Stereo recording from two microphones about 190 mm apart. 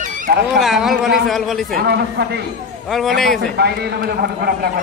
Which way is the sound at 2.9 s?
Centre (ahead or behind).